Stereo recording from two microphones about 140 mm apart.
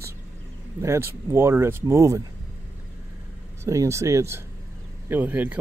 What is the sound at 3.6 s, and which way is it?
Speech, 20° right (ahead or behind).